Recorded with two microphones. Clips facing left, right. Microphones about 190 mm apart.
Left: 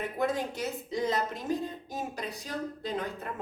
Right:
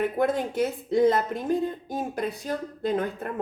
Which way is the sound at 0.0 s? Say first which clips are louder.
Right 6 dB; 55° right (ahead or behind).